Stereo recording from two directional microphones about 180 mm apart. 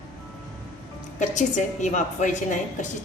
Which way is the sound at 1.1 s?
45° left (ahead or behind).